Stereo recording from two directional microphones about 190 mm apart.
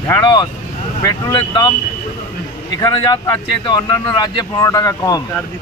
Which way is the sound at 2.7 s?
20° left (ahead or behind).